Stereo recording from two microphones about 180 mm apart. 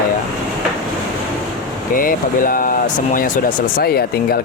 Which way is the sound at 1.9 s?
50° left (ahead or behind).